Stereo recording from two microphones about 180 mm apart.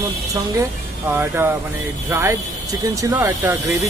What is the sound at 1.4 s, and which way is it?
Speech, 10° right (ahead or behind).